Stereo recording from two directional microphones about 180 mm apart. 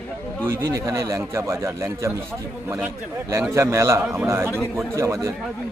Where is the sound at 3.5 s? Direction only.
15° right (ahead or behind).